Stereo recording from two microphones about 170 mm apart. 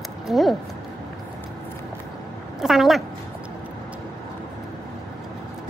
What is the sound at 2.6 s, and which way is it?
Speech, centre (ahead or behind).